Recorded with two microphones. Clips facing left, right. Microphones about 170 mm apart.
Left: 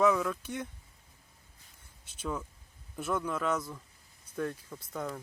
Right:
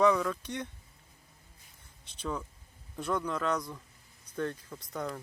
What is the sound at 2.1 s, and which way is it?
Speech, 5° left (ahead or behind).